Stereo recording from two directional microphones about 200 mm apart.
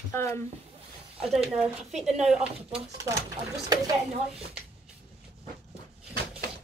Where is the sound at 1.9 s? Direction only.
35° right (ahead or behind).